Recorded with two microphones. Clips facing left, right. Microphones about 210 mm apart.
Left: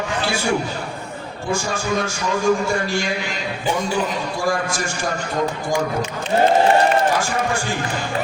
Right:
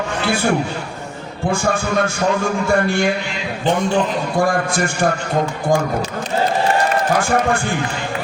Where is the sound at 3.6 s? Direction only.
10° left (ahead or behind).